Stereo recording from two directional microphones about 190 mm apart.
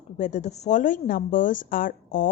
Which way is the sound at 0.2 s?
40° left (ahead or behind).